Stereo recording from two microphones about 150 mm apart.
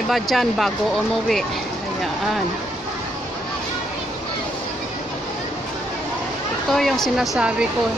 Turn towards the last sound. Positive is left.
turn(degrees=-5)  # may be behind; listen again after turning